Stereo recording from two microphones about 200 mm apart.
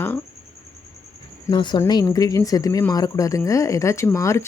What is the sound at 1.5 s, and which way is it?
Speech, 25° left (ahead or behind).